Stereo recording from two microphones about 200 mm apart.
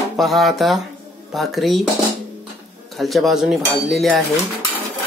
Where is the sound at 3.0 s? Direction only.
Centre (ahead or behind).